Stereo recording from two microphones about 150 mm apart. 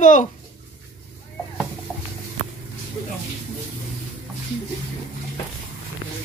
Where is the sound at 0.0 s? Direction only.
55° left (ahead or behind).